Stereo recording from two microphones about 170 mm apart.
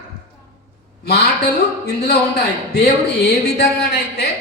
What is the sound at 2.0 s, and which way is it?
A man's voice, 70° left (ahead or behind).